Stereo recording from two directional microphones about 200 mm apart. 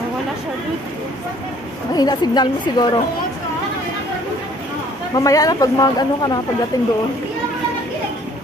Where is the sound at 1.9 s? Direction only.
20° left (ahead or behind).